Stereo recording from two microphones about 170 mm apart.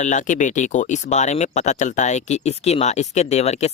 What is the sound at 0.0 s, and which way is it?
Speech, 45° left (ahead or behind).